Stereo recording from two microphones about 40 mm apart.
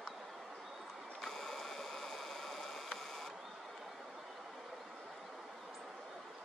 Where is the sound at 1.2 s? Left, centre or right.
Centre.